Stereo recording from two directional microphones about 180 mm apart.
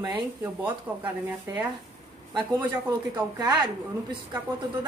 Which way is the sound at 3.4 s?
20° right (ahead or behind).